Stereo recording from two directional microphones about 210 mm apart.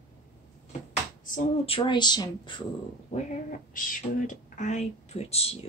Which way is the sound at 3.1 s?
40° left (ahead or behind).